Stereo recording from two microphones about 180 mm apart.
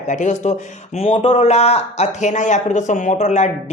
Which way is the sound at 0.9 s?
30° left (ahead or behind).